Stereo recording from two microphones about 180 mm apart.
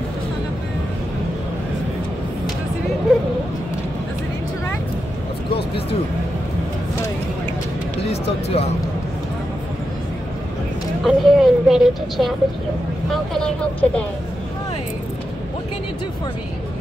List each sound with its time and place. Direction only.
8.1 s music: 35° left (ahead or behind)
11.1 s speech: centre (ahead or behind)